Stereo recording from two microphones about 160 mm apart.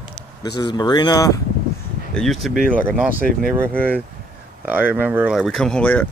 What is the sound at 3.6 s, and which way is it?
Speech, 10° left (ahead or behind).